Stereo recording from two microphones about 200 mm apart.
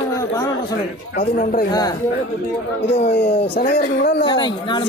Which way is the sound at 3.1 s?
45° left (ahead or behind).